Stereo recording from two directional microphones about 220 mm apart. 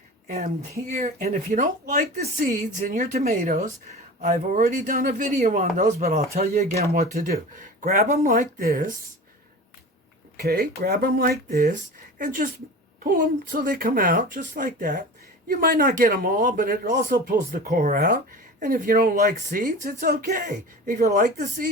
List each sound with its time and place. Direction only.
0.3 s speech: 30° right (ahead or behind)
10.3 s speech: 45° right (ahead or behind)
13.1 s speech: 40° right (ahead or behind)